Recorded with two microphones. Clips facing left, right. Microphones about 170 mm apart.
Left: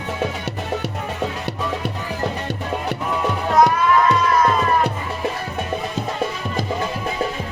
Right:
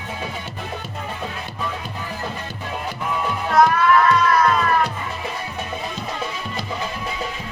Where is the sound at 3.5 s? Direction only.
20° left (ahead or behind).